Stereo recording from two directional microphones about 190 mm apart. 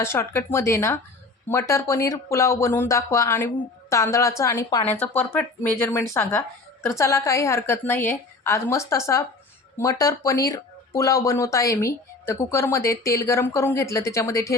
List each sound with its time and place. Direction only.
0.0 s speech: 15° left (ahead or behind)